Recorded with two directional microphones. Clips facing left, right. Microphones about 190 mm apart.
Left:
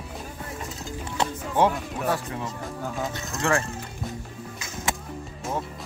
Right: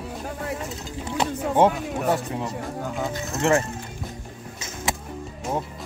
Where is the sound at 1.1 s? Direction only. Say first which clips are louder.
Right 4 dB; 25° right (ahead or behind).